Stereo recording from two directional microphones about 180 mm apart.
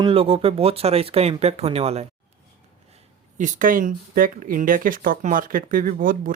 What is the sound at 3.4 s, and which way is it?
Speech, 50° right (ahead or behind).